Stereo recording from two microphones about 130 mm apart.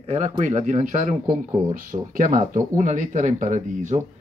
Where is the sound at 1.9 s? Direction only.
90° right; by 4.0 s 70° right (ahead or behind).